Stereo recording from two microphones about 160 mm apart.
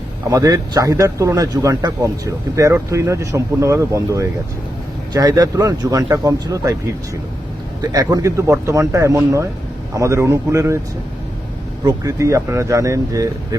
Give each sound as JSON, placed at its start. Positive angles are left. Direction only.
{"t": 0.3, "sound": "speech", "side_deg": -20}
{"t": 7.8, "sound": "a man's voice", "side_deg": -25}
{"t": 12.0, "sound": "speech", "side_deg": -20}